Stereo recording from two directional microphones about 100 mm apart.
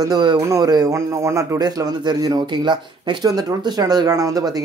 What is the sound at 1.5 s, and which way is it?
Speech, 45° right (ahead or behind).